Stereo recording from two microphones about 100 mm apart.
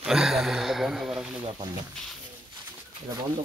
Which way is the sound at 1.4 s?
50° right (ahead or behind).